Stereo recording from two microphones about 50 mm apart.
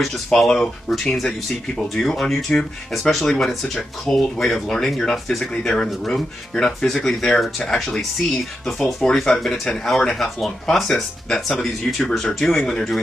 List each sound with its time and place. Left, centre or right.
0.0 s speech: centre
6.5 s speech: centre
9.0 s speech: centre